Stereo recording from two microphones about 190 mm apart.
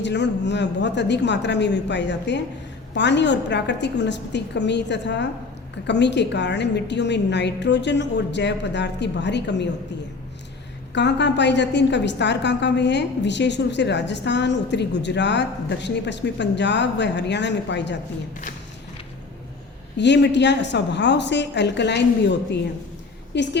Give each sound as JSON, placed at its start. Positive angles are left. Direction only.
{"t": 0.0, "sound": "a woman's voice", "side_deg": 65}
{"t": 10.9, "sound": "a woman's voice", "side_deg": 65}
{"t": 20.0, "sound": "a woman's voice", "side_deg": 65}